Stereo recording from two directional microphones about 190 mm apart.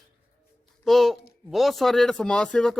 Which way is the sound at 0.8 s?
Centre (ahead or behind).